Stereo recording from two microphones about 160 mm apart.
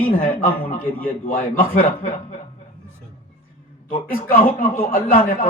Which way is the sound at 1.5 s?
60° left (ahead or behind).